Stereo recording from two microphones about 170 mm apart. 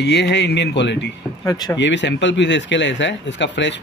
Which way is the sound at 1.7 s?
90° left.